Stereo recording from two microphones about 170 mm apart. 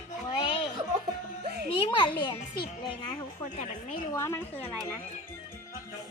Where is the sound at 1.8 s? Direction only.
25° left (ahead or behind).